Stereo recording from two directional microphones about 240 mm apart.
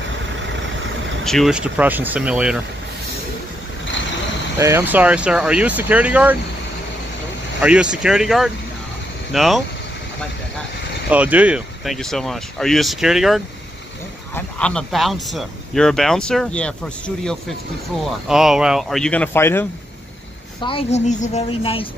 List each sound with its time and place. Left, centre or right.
1.2 s speech: centre
4.6 s speech: centre
7.6 s speech: centre
11.1 s speech: centre
20.6 s speech: left